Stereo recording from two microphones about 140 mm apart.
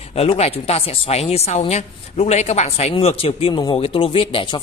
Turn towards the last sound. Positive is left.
turn(degrees=40)  # may be behind; listen again after turning